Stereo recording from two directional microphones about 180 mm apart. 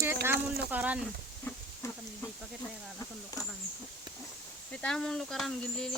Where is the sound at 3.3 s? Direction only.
20° left (ahead or behind).